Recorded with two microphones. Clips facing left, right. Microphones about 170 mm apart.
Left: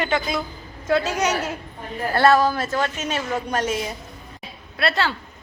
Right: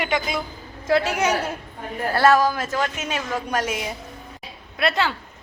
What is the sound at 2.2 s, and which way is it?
A woman's voice, 10° right (ahead or behind).